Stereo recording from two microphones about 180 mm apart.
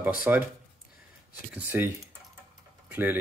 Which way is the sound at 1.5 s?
10° right (ahead or behind).